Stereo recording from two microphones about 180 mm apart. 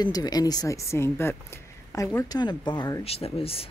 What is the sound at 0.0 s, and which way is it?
Speech, 20° left (ahead or behind).